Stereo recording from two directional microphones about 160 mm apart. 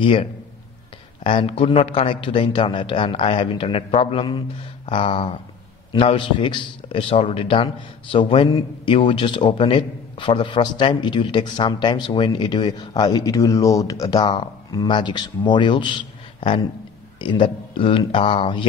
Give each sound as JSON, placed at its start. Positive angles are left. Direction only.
{"t": 0.0, "sound": "a man's voice", "side_deg": 35}
{"t": 8.5, "sound": "a man's voice", "side_deg": 25}